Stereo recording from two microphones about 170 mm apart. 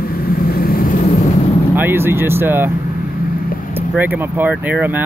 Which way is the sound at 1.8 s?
15° right (ahead or behind).